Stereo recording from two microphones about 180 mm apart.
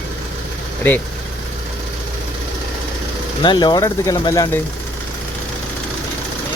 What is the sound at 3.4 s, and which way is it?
Speech, 25° left (ahead or behind).